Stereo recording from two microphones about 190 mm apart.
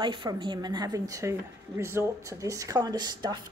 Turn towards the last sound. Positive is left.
turn(degrees=-20)  # may be behind; listen again after turning